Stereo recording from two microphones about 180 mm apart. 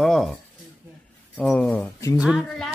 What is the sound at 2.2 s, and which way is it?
Speech, centre (ahead or behind).